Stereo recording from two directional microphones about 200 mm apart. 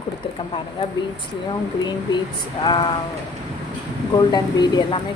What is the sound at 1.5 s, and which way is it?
A woman's voice, 20° left (ahead or behind).